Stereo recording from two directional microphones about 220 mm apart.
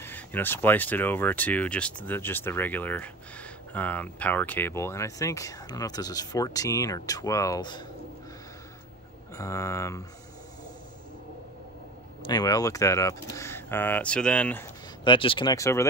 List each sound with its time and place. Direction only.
0.0 s speech: 10° left (ahead or behind)
9.3 s speech: 15° left (ahead or behind)
12.2 s speech: 20° left (ahead or behind)
15.0 s speech: 20° left (ahead or behind)